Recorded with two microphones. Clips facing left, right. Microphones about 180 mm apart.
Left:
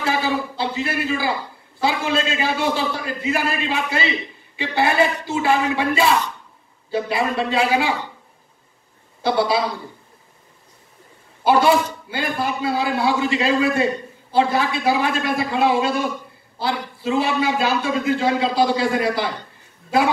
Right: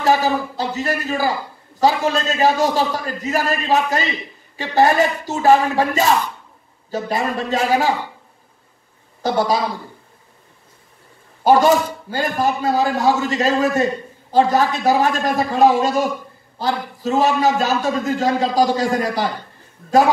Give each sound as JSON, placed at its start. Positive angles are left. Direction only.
{"t": 0.0, "sound": "a sound", "side_deg": -40}
{"t": 1.8, "sound": "a man's voice", "side_deg": -40}
{"t": 9.2, "sound": "a man's voice", "side_deg": -45}
{"t": 11.4, "sound": "a man's voice", "side_deg": -40}